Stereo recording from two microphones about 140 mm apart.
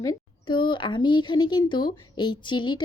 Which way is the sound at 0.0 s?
30° left (ahead or behind).